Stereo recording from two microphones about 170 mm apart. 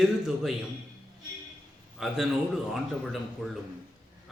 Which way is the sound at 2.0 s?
Centre (ahead or behind).